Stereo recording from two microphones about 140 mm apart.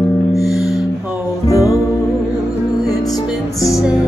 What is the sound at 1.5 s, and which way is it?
Music, 20° left (ahead or behind).